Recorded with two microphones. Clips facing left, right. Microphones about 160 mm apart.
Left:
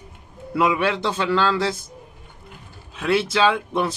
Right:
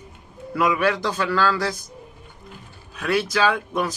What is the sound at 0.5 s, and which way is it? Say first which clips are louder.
Speech: even; 25° left (ahead or behind).